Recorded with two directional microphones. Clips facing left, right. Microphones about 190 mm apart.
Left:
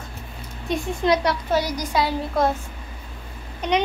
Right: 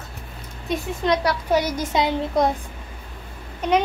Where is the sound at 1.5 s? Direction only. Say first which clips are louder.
Right 3 dB; 20° right (ahead or behind).